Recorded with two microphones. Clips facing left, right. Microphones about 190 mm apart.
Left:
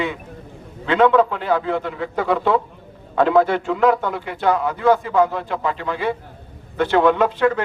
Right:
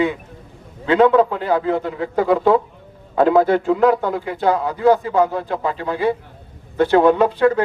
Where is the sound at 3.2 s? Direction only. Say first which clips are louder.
Right 1 dB; 20° right (ahead or behind).